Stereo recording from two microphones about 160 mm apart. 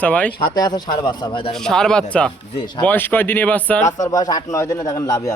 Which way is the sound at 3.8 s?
20° left (ahead or behind).